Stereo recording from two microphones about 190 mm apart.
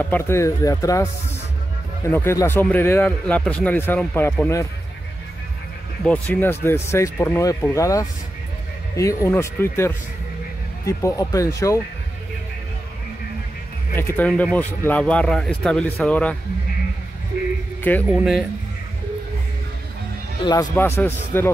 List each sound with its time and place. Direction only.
0.1 s a man's voice: 15° left (ahead or behind)
2.0 s a man's voice: 15° left (ahead or behind)
6.0 s a man's voice: 5° left (ahead or behind)
13.9 s a man's voice: 10° left (ahead or behind)
18.0 s speech: 5° right (ahead or behind)
20.4 s a man's voice: 15° left (ahead or behind)